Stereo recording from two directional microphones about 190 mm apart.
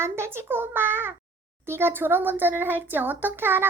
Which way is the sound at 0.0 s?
15° right (ahead or behind).